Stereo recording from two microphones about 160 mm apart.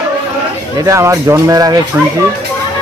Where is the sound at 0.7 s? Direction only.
20° right (ahead or behind).